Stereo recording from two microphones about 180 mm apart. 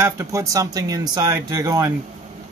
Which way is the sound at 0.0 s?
15° right (ahead or behind).